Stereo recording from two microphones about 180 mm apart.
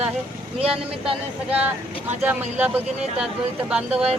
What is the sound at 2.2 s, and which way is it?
Speech, 10° right (ahead or behind).